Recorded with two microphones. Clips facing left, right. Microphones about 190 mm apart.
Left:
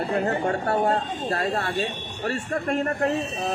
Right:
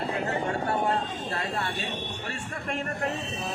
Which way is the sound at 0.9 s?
50° left (ahead or behind).